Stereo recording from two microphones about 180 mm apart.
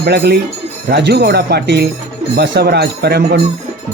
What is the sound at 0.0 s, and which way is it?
Speech, 65° right (ahead or behind).